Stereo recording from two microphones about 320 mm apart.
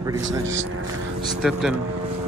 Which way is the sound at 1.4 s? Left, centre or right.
Centre.